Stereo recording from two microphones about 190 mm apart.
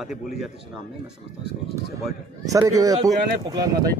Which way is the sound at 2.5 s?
20° right (ahead or behind).